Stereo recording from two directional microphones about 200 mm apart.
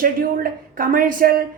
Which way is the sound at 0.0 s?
45° right (ahead or behind).